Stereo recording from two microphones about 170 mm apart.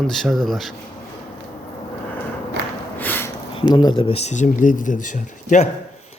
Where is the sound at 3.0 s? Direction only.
10° left (ahead or behind).